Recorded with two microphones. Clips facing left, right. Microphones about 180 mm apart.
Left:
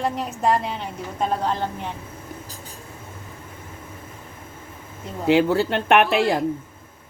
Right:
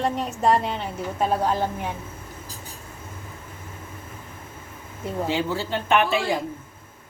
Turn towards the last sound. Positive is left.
turn(degrees=65)  # may be behind; listen again after turning